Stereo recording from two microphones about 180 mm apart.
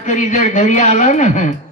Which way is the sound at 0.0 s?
45° left (ahead or behind).